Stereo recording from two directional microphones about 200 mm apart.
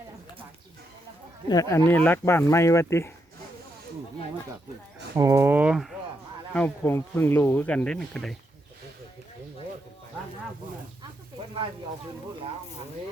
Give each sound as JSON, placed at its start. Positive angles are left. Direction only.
{"t": 1.5, "sound": "speech", "side_deg": 15}
{"t": 5.1, "sound": "speech", "side_deg": -15}
{"t": 6.5, "sound": "speech", "side_deg": 10}